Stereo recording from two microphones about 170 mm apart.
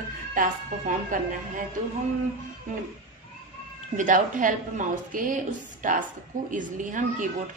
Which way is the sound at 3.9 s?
50° right (ahead or behind).